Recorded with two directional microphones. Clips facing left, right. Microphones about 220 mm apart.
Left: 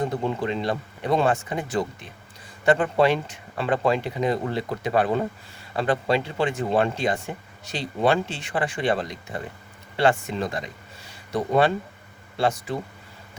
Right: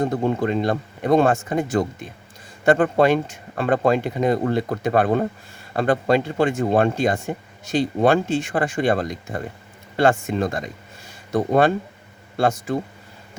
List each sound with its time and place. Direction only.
0.0 s speech: 50° right (ahead or behind)